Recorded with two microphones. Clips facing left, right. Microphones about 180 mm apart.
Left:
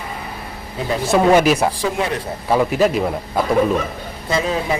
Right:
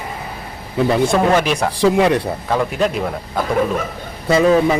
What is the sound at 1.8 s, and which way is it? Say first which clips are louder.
Speech: right 8 dB; 70° right (ahead or behind).